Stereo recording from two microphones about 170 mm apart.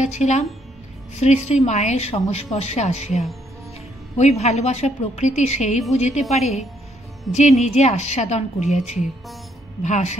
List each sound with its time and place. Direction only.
0.0 s a woman's voice: 45° left (ahead or behind)
4.2 s a woman's voice: 40° left (ahead or behind)
7.3 s speech: centre (ahead or behind)
7.6 s a woman's voice: 40° left (ahead or behind)